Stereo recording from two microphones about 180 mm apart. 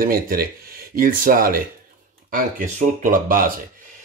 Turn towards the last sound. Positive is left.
turn(degrees=-50)  # may be behind; listen again after turning